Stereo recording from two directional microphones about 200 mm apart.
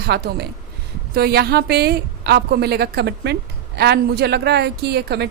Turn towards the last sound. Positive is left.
turn(degrees=-55)  # may be behind; listen again after turning